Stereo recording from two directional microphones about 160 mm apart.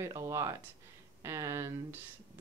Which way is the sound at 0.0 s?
20° right (ahead or behind).